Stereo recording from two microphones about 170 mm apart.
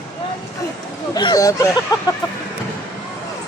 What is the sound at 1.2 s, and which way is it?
Speech, 25° left (ahead or behind).